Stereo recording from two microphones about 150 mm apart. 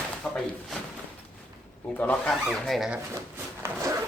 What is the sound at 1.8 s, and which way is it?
Speech, 10° left (ahead or behind).